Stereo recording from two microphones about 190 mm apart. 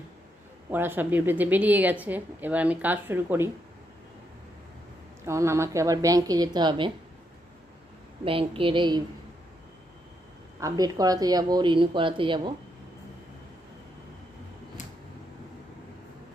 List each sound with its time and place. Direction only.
0.7 s a woman's voice: 10° right (ahead or behind)
5.2 s a woman's voice: 15° right (ahead or behind)
8.2 s speech: 30° right (ahead or behind)
10.6 s speech: 20° right (ahead or behind)